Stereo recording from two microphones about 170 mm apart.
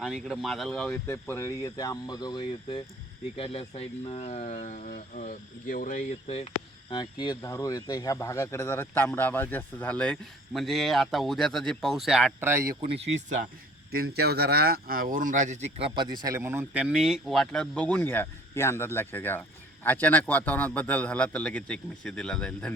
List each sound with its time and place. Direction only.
0.0 s speech: centre (ahead or behind)
1.0 s speech: 15° left (ahead or behind); by 6.5 s 40° left (ahead or behind)
6.9 s speech: 25° left (ahead or behind); by 12.7 s 15° right (ahead or behind)
12.9 s speech: 40° right (ahead or behind)
13.9 s speech: 65° right (ahead or behind); by 15.9 s 40° right (ahead or behind)
16.0 s speech: 25° right (ahead or behind); by 22.7 s 5° left (ahead or behind)